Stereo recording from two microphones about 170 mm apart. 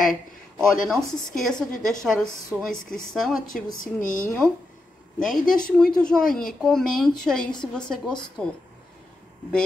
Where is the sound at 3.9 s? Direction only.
50° left (ahead or behind).